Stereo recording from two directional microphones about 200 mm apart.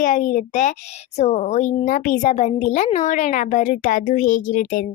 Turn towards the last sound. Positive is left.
turn(degrees=40)  # may be behind; listen again after turning